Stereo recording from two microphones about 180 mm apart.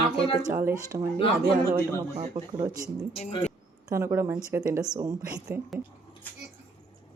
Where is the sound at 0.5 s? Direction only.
15° right (ahead or behind).